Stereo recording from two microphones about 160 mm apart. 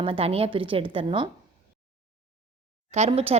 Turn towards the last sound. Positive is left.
turn(degrees=-40)  # may be behind; listen again after turning